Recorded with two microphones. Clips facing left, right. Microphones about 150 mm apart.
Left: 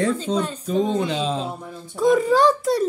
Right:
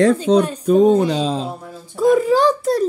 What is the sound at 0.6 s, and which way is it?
Speech, 45° right (ahead or behind).